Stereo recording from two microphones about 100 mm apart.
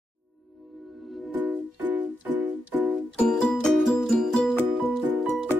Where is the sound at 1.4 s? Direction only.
15° right (ahead or behind).